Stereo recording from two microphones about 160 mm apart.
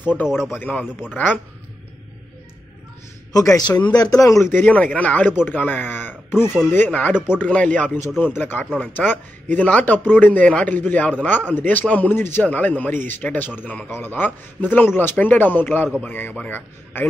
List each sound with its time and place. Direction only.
0.5 s a man's voice: 10° left (ahead or behind)
3.3 s a man's voice: 20° left (ahead or behind)
3.6 s a man's voice: 10° left (ahead or behind)
3.9 s a man's voice: 25° left (ahead or behind)